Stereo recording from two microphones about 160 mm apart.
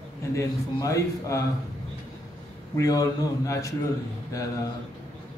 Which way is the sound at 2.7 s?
20° left (ahead or behind).